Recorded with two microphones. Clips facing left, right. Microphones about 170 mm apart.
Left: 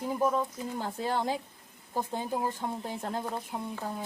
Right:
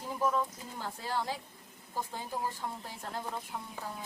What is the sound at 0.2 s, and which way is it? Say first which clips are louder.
Speech: left 1 dB; 20° left (ahead or behind).